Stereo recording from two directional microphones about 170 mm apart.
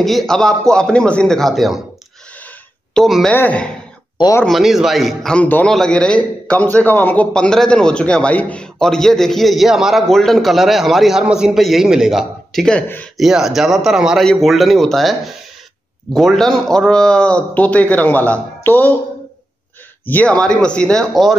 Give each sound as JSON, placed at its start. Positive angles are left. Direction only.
{"t": 0.0, "sound": "a man's voice", "side_deg": 0}
{"t": 2.4, "sound": "a sound", "side_deg": 5}
{"t": 3.3, "sound": "a man's voice", "side_deg": 10}
{"t": 4.5, "sound": "a man's voice", "side_deg": 0}
{"t": 13.2, "sound": "a man's voice", "side_deg": 0}
{"t": 20.1, "sound": "a man's voice", "side_deg": 10}